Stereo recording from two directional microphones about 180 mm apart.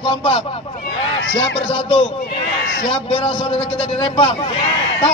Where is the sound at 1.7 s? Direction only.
30° left (ahead or behind).